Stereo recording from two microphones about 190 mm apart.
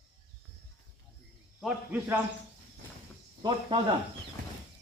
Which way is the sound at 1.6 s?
5° right (ahead or behind).